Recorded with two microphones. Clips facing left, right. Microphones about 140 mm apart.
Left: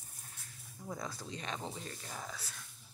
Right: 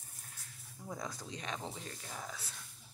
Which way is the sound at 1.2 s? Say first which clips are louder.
Left 1 dB; 15° right (ahead or behind).